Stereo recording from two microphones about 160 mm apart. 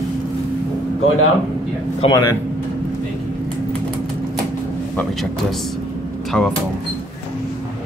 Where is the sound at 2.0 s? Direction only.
35° left (ahead or behind).